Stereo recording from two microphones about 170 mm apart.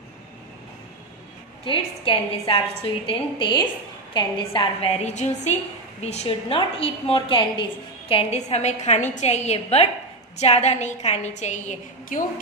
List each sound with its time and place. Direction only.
1.6 s a woman's voice: 30° left (ahead or behind)